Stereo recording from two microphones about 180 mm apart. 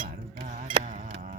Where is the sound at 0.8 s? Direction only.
45° right (ahead or behind).